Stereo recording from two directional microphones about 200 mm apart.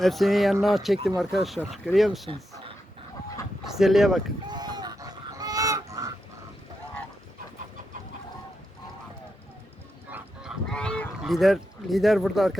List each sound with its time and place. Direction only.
0.0 s speech: centre (ahead or behind)
3.6 s speech: centre (ahead or behind)
4.4 s goose: 20° right (ahead or behind)
10.1 s goose: 5° right (ahead or behind)